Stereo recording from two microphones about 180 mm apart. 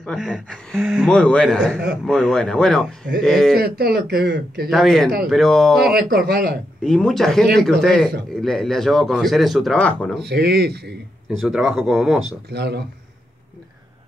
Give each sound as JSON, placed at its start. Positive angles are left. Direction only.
{"t": 0.0, "sound": "speech", "side_deg": 0}
{"t": 3.5, "sound": "speech", "side_deg": -60}
{"t": 4.6, "sound": "speech", "side_deg": 0}
{"t": 5.9, "sound": "speech", "side_deg": -55}
{"t": 6.8, "sound": "speech", "side_deg": 5}
{"t": 10.2, "sound": "speech", "side_deg": -65}
{"t": 11.2, "sound": "speech", "side_deg": -5}
{"t": 12.4, "sound": "speech", "side_deg": -65}